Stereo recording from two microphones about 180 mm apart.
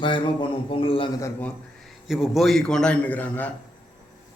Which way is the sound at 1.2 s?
10° left (ahead or behind).